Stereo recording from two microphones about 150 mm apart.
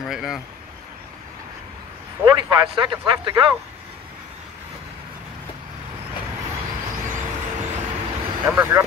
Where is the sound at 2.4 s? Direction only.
30° right (ahead or behind).